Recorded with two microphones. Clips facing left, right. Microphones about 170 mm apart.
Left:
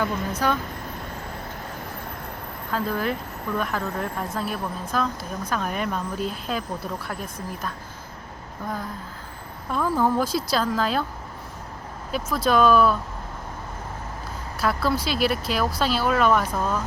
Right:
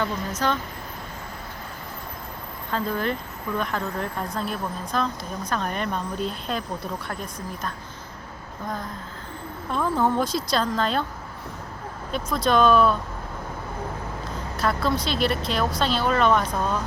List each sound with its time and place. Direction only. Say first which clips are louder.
0.0 s speech: left 1 dB; 10° left (ahead or behind)
2.7 s speech: even; 5° left (ahead or behind)
9.7 s speech: left 1 dB; 5° left (ahead or behind)
12.1 s speech: even; 5° left (ahead or behind)
14.6 s speech: even; 5° left (ahead or behind)